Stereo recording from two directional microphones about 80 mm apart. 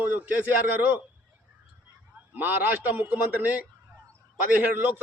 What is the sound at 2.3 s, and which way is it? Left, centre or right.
A man's voice, right.